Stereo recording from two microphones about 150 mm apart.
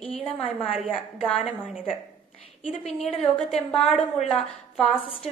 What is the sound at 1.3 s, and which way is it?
A woman's voice, centre (ahead or behind).